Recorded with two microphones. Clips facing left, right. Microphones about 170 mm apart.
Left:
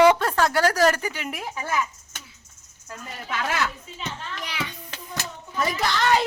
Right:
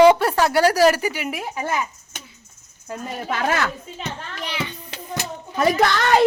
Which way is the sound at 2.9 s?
45° right (ahead or behind).